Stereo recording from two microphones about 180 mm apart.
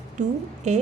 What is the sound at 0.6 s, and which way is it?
Speech, 40° right (ahead or behind).